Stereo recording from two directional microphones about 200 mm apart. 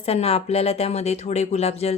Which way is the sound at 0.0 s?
30° left (ahead or behind).